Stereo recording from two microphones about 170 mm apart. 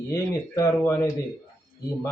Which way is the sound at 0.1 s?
20° left (ahead or behind).